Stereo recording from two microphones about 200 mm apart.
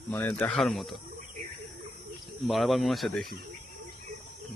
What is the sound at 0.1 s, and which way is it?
Speech, 10° left (ahead or behind).